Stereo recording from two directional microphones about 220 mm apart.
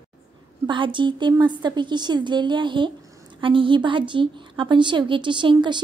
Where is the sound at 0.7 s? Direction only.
20° right (ahead or behind).